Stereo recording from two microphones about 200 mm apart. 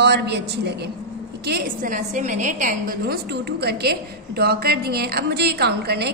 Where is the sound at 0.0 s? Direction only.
55° right (ahead or behind).